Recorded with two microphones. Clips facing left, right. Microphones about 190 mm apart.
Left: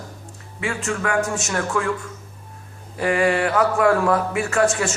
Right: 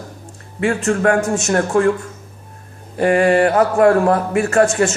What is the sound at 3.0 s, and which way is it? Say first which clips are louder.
A man's voice: right 6 dB; 55° right (ahead or behind).